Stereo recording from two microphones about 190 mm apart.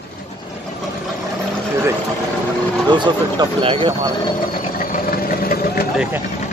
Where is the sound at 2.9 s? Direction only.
25° right (ahead or behind).